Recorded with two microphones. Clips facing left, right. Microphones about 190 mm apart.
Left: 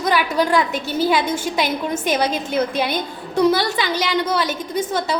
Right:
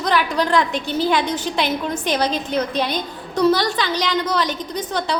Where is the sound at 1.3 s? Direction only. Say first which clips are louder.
Left 1 dB; 45° left (ahead or behind).